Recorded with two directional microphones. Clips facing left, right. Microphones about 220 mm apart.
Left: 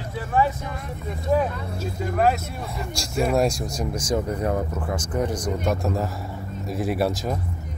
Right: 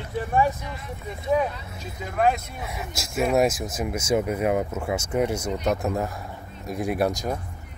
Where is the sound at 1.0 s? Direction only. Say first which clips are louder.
Left 1 dB; centre (ahead or behind).